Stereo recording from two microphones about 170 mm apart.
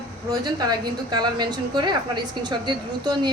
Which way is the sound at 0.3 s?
25° right (ahead or behind).